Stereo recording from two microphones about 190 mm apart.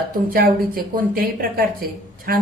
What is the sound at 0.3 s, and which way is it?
Speech, 50° right (ahead or behind).